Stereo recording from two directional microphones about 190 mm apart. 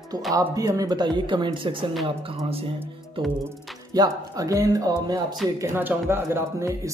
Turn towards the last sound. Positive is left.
turn(degrees=-15)  # may be behind; listen again after turning